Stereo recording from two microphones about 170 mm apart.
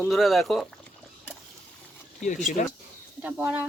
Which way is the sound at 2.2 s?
45° left (ahead or behind).